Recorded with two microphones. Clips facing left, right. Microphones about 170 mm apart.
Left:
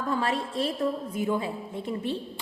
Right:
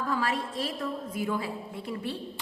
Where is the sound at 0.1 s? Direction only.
30° left (ahead or behind).